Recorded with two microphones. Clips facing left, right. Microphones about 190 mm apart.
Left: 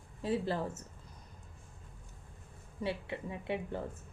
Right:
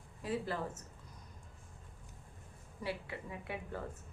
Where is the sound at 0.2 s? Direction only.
30° left (ahead or behind).